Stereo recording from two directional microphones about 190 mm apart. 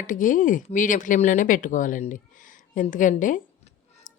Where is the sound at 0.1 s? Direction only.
45° left (ahead or behind).